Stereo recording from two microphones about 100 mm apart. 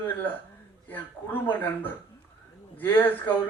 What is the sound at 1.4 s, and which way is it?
Speech, 20° left (ahead or behind).